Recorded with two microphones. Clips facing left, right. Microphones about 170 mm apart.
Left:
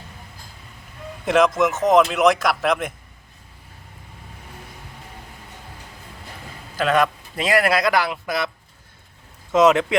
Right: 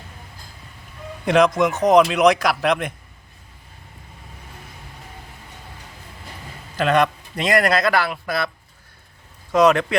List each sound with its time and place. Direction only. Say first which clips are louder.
1.2 s speech: right 1 dB; centre (ahead or behind)
6.7 s a man's voice: right 1 dB; 5° left (ahead or behind)
9.5 s speech: even; 20° left (ahead or behind)